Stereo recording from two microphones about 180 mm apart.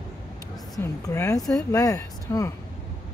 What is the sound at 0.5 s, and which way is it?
Speech, 15° left (ahead or behind).